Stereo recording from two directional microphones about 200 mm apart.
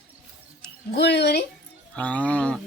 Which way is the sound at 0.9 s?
60° left (ahead or behind).